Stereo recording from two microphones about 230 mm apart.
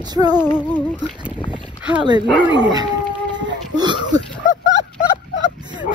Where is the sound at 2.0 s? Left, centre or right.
Centre.